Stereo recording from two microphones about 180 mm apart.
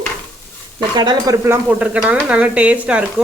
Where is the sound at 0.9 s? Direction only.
25° right (ahead or behind).